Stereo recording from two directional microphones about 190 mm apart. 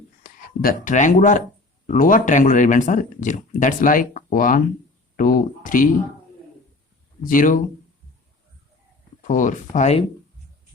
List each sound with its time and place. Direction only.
0.2 s speech: 50° left (ahead or behind)
7.3 s speech: 45° left (ahead or behind)
9.2 s speech: 40° left (ahead or behind)